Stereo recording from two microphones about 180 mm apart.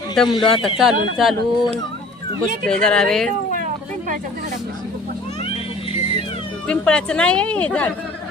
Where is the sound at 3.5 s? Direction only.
45° right (ahead or behind).